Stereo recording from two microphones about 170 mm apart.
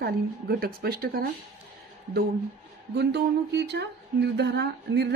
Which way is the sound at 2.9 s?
85° right.